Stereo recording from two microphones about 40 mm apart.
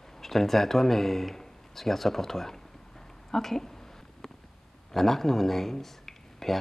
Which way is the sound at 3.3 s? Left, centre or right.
Centre.